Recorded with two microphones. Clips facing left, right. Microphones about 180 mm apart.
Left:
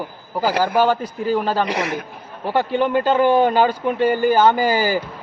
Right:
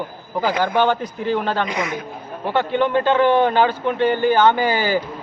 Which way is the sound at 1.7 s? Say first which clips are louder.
Left 2 dB; 65° left (ahead or behind).